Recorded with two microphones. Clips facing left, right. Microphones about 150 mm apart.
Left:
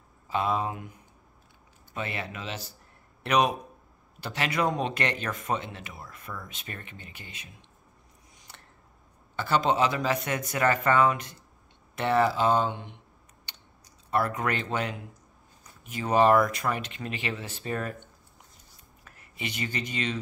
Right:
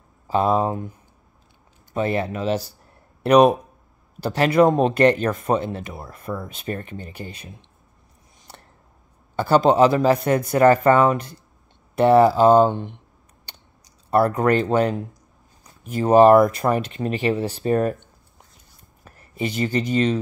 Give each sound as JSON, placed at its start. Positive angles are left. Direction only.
{"t": 0.3, "sound": "speech", "side_deg": -40}
{"t": 2.0, "sound": "speech", "side_deg": -40}
{"t": 4.2, "sound": "speech", "side_deg": -35}
{"t": 9.4, "sound": "speech", "side_deg": -35}
{"t": 14.1, "sound": "speech", "side_deg": -35}
{"t": 19.0, "sound": "speech", "side_deg": -35}